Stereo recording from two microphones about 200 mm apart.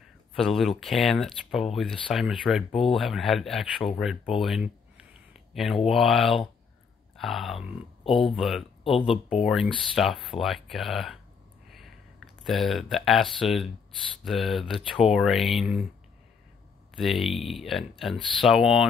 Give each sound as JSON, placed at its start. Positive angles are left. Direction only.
{"t": 0.4, "sound": "speech", "side_deg": 0}
{"t": 8.9, "sound": "speech", "side_deg": 25}
{"t": 9.4, "sound": "speech", "side_deg": 0}
{"t": 12.4, "sound": "speech", "side_deg": 0}
{"t": 16.9, "sound": "speech", "side_deg": 0}